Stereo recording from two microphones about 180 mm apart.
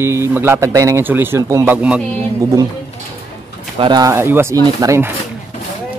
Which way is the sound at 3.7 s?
25° right (ahead or behind).